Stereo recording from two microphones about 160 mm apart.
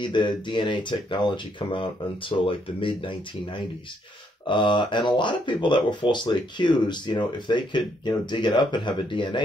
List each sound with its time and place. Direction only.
0.0 s speech: 30° left (ahead or behind)